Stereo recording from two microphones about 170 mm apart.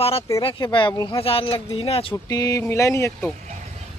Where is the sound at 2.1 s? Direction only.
20° left (ahead or behind).